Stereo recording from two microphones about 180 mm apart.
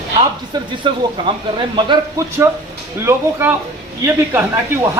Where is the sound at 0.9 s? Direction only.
25° right (ahead or behind).